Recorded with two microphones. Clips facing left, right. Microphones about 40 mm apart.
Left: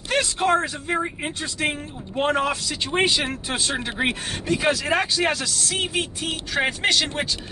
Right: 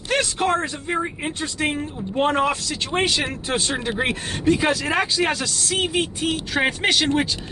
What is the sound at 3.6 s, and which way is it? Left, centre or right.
Speech, centre.